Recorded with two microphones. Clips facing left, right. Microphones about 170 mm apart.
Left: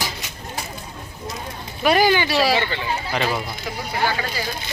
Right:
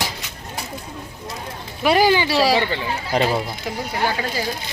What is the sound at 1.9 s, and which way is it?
Speech, 30° right (ahead or behind).